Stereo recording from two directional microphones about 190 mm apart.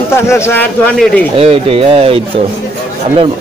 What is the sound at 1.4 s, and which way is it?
Speech, 30° right (ahead or behind).